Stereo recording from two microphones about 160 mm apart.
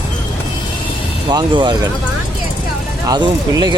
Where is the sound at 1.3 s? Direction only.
25° right (ahead or behind).